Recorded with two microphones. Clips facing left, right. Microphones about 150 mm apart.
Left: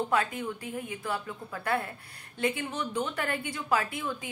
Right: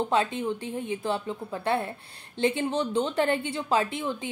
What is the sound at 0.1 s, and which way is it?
A woman's voice, 25° right (ahead or behind).